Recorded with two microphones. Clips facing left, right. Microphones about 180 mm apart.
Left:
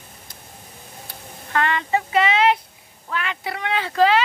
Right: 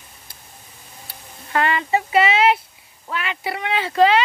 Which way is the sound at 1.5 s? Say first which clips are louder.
Right 1 dB; 10° right (ahead or behind).